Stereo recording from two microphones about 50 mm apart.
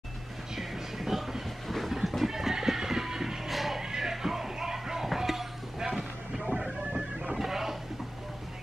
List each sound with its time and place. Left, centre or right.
0.6 s train: centre
3.8 s music: centre